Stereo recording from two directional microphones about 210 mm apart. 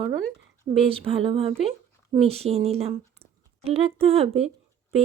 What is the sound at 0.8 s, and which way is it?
Speech, 25° right (ahead or behind).